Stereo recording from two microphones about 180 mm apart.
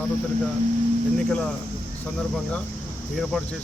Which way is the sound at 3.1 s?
Centre (ahead or behind).